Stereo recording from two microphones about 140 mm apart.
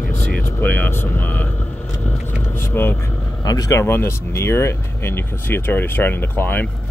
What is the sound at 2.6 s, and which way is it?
Speech, 15° left (ahead or behind).